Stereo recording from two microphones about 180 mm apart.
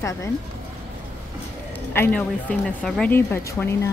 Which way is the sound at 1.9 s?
10° left (ahead or behind).